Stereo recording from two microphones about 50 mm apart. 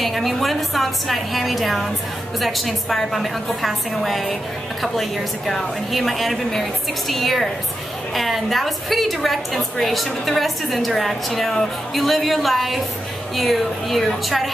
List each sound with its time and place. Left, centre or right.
0.0 s a woman's voice: centre
5.5 s a woman's voice: centre